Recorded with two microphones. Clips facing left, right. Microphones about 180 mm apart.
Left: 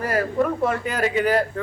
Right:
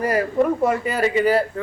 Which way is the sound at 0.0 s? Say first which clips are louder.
Right 3 dB; 10° right (ahead or behind).